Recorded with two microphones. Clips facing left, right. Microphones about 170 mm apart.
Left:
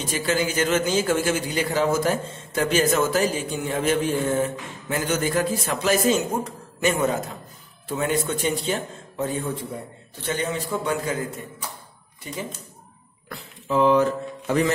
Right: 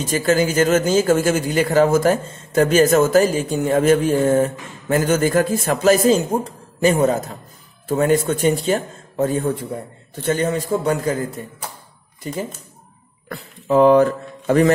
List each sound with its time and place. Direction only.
0.1 s a man's voice: 45° right (ahead or behind)
6.0 s a man's voice: 35° right (ahead or behind)
12.2 s speech: 40° right (ahead or behind)
13.3 s a man's voice: 55° right (ahead or behind)